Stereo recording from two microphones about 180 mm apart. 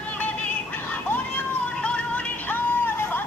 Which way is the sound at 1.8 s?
5° left (ahead or behind).